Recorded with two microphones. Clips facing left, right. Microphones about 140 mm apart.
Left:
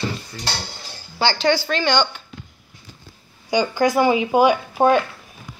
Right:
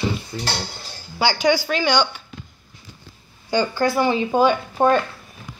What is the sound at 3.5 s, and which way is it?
Speech, 15° left (ahead or behind).